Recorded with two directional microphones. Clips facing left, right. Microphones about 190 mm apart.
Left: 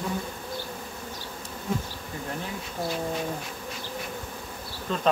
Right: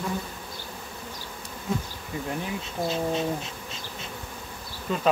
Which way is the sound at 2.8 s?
20° right (ahead or behind).